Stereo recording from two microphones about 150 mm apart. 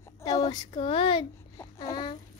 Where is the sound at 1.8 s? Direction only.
30° left (ahead or behind).